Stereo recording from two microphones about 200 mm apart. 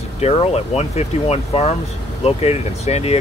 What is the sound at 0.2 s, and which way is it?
Speech, 30° left (ahead or behind).